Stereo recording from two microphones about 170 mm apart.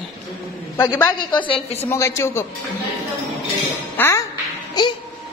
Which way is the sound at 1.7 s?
15° left (ahead or behind).